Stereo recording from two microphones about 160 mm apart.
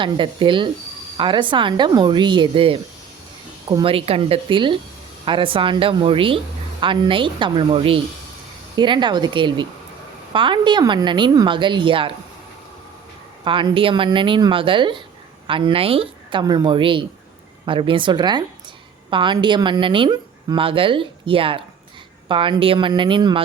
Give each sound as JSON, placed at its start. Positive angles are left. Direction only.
{"t": 0.0, "sound": "speech", "side_deg": -30}
{"t": 3.7, "sound": "a woman's voice", "side_deg": -25}
{"t": 3.9, "sound": "a woman's voice", "side_deg": -35}
{"t": 13.4, "sound": "speech", "side_deg": -30}